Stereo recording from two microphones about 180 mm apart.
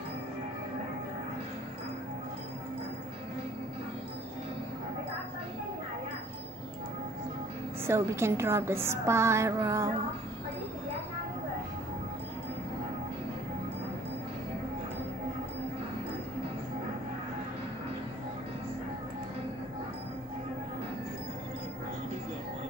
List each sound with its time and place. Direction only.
7.8 s a woman's voice: 15° right (ahead or behind)